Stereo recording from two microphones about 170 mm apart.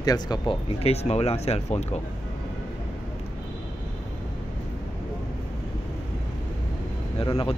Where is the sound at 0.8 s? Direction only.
40° left (ahead or behind).